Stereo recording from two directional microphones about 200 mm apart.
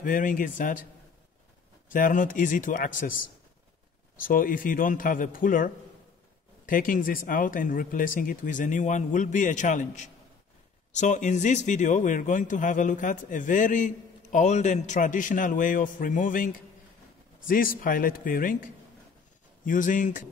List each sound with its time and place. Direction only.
0.0 s speech: 40° left (ahead or behind)
1.9 s speech: 40° left (ahead or behind)